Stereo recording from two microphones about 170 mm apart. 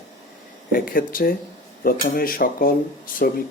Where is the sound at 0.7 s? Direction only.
55° left (ahead or behind).